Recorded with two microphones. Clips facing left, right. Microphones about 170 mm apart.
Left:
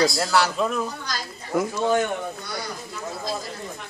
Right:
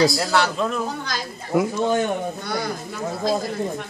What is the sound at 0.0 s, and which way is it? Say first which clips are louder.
Speech: right 2 dB; centre (ahead or behind).